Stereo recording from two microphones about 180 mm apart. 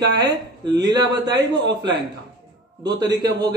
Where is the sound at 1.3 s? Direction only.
75° right (ahead or behind).